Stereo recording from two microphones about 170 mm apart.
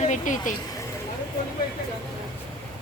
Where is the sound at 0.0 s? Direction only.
45° left (ahead or behind).